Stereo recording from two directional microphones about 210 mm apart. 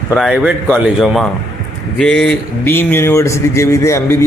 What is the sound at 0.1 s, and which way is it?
Speech, centre (ahead or behind).